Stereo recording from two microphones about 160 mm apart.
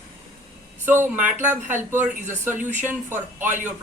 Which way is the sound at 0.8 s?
15° right (ahead or behind).